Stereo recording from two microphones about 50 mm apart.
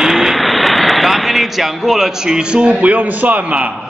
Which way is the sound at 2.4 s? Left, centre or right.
Centre.